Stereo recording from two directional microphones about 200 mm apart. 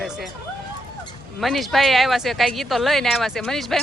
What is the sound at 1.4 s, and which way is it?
Speech, centre (ahead or behind).